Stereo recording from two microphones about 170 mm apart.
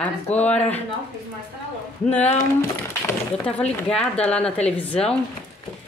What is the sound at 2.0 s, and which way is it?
Speech, 40° left (ahead or behind).